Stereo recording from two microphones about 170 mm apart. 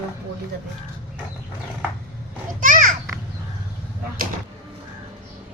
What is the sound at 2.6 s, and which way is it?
Children playing, 50° right (ahead or behind).